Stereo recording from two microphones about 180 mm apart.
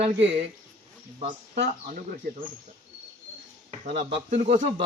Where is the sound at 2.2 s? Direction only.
50° right (ahead or behind).